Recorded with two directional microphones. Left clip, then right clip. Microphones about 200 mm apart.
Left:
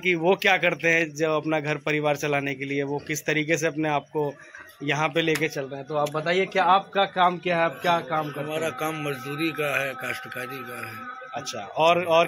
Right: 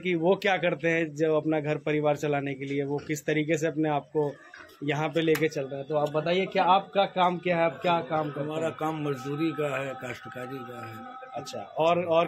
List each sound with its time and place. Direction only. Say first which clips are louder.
0.0 s a man's voice: left 4 dB; 5° left (ahead or behind)
8.5 s a man's voice: left 2 dB; 20° right (ahead or behind)
11.3 s a man's voice: left 4 dB; 15° left (ahead or behind)